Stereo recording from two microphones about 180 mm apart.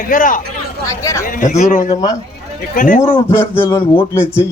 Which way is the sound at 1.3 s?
45° left (ahead or behind).